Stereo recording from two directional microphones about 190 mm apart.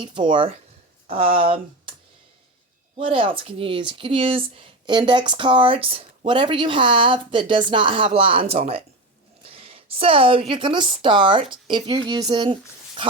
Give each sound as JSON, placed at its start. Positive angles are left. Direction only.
{"t": 0.0, "sound": "speech", "side_deg": -25}
{"t": 3.0, "sound": "a woman's voice", "side_deg": -30}